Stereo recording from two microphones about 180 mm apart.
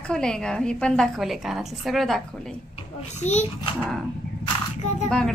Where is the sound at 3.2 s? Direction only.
40° left (ahead or behind).